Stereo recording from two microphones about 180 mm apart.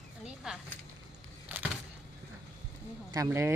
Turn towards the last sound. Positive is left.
turn(degrees=-15)  # may be behind; listen again after turning